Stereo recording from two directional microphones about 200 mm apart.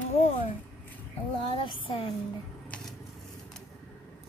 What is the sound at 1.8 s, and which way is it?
Speech, 30° left (ahead or behind).